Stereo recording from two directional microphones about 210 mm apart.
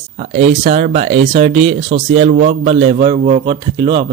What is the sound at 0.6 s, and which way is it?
A man's voice, 35° right (ahead or behind).